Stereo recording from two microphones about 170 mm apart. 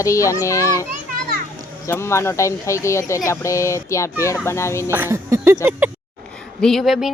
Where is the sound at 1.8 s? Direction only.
15° left (ahead or behind).